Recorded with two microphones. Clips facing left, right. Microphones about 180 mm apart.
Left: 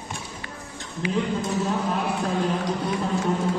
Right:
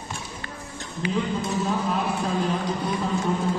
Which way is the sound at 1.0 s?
10° left (ahead or behind).